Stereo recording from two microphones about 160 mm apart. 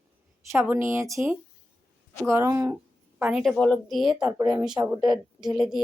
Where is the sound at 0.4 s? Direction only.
15° right (ahead or behind).